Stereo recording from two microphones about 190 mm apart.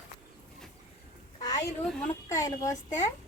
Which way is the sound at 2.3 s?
15° left (ahead or behind).